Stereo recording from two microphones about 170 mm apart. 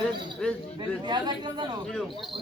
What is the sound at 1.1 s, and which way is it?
Speech, 25° right (ahead or behind).